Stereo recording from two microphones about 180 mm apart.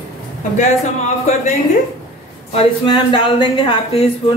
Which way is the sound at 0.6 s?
40° left (ahead or behind).